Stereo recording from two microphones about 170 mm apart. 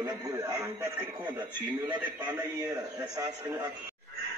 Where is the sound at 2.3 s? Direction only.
20° right (ahead or behind).